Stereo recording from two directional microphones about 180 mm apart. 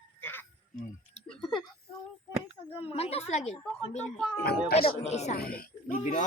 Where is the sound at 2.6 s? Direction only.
30° left (ahead or behind).